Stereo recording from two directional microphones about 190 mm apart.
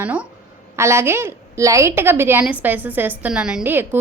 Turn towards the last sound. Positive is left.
turn(degrees=-10)  # may be behind; listen again after turning